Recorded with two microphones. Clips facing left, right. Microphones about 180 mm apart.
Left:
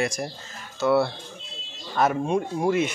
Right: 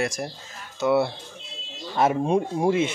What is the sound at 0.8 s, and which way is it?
Speech, 20° right (ahead or behind).